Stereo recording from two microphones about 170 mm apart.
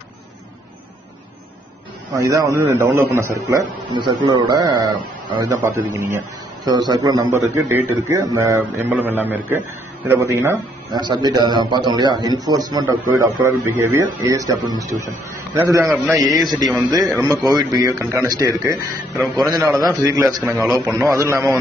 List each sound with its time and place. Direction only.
2.1 s a man's voice: 20° right (ahead or behind)
17.5 s a man's voice: 25° right (ahead or behind)
19.1 s a man's voice: centre (ahead or behind)
19.5 s a man's voice: 20° right (ahead or behind)